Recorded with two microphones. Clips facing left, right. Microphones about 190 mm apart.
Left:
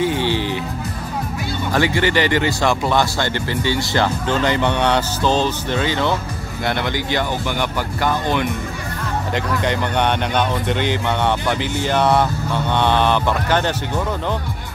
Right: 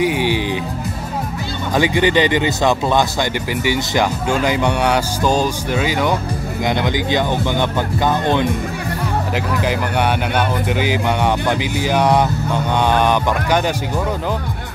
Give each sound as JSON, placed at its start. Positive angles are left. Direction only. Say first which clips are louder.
{"t": 0.0, "sound": "music", "louder": "right 2 dB", "side_deg": -15}
{"t": 1.7, "sound": "speech", "louder": "right 3 dB", "side_deg": -15}
{"t": 9.3, "sound": "speech", "louder": "left 1 dB", "side_deg": -5}